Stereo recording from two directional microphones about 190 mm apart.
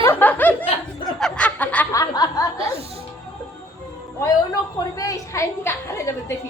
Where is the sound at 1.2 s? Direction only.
5° left (ahead or behind).